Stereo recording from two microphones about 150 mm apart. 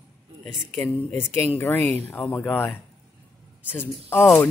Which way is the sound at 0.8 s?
15° left (ahead or behind).